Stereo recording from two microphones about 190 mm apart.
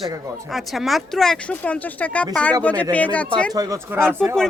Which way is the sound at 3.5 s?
15° right (ahead or behind).